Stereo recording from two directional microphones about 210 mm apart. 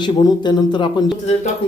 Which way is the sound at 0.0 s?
20° left (ahead or behind).